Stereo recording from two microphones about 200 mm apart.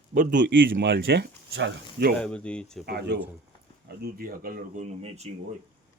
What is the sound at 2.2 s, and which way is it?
Speech, 5° left (ahead or behind).